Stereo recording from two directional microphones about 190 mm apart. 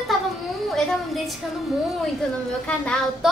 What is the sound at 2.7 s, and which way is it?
Speech, 5° left (ahead or behind).